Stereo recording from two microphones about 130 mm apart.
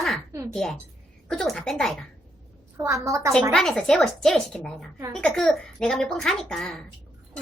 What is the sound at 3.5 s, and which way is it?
A woman's voice, 5° left (ahead or behind).